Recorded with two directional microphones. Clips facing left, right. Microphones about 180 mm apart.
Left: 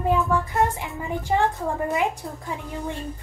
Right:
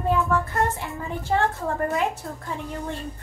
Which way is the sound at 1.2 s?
15° left (ahead or behind).